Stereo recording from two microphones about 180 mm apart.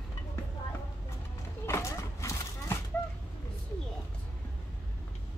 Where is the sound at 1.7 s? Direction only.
15° left (ahead or behind).